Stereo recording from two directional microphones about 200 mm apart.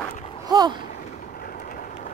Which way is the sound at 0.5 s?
20° right (ahead or behind).